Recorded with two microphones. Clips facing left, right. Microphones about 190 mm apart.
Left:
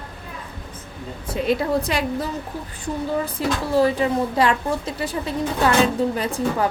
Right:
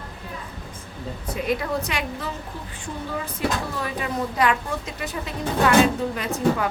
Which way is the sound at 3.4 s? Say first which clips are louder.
Left 8 dB; 35° left (ahead or behind).